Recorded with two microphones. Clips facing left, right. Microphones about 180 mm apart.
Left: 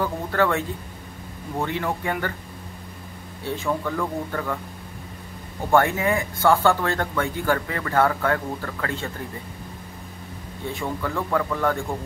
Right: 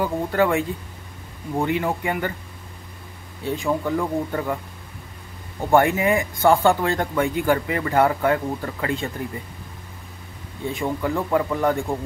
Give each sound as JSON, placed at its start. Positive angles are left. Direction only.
{"t": 0.0, "sound": "speech", "side_deg": -15}
{"t": 3.5, "sound": "speech", "side_deg": -15}
{"t": 5.7, "sound": "speech", "side_deg": -15}
{"t": 10.7, "sound": "speech", "side_deg": -15}